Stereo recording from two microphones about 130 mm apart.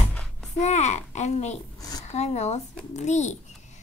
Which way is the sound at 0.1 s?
5° left (ahead or behind).